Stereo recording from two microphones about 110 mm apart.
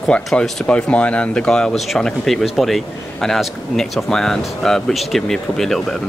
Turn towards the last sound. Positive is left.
turn(degrees=5)  # may be behind; listen again after turning